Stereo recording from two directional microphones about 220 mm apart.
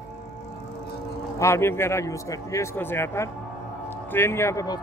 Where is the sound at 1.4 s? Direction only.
10° left (ahead or behind).